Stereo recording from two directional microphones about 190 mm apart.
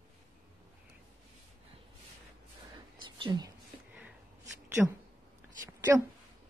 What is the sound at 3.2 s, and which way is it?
Speech, 20° right (ahead or behind).